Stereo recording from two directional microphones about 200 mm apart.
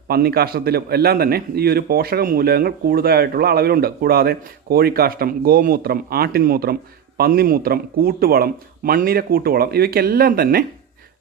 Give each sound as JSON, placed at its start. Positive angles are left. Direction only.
{"t": 0.1, "sound": "a man's voice", "side_deg": -50}